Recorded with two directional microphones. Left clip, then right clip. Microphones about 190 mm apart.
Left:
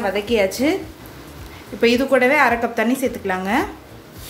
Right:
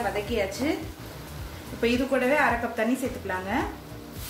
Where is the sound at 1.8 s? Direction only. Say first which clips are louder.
Left 9 dB; 45° left (ahead or behind).